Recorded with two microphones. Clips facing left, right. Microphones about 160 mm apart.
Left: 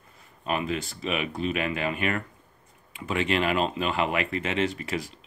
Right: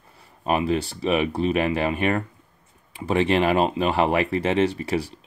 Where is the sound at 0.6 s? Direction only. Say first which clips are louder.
Right 6 dB; 30° right (ahead or behind).